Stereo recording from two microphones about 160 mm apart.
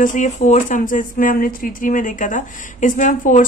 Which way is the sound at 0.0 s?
50° left (ahead or behind).